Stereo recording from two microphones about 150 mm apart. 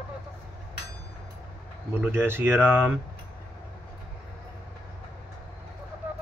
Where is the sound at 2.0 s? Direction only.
15° right (ahead or behind).